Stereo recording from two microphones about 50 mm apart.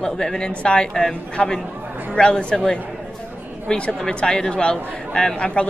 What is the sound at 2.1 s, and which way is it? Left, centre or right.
Speech, centre.